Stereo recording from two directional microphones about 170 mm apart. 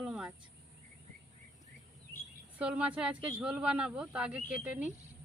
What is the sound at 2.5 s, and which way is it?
A woman's voice, 5° right (ahead or behind).